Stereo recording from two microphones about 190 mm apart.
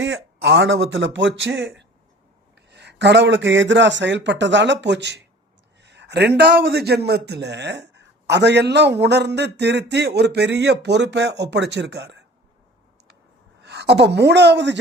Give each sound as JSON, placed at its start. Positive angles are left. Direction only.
{"t": 0.0, "sound": "speech", "side_deg": -70}
{"t": 2.6, "sound": "a man's voice", "side_deg": -65}
{"t": 13.6, "sound": "a woman's voice", "side_deg": -65}